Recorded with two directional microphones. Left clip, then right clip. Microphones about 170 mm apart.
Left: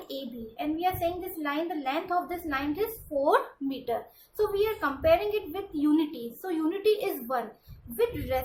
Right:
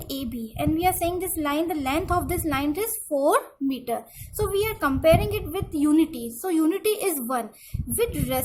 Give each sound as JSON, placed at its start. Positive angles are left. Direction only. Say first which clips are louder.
{"t": 0.1, "sound": "a woman's voice", "louder": "right 6 dB", "side_deg": -60}